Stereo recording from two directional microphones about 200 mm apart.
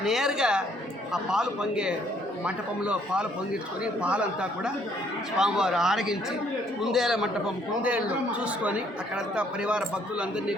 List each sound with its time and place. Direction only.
0.0 s a man's voice: centre (ahead or behind)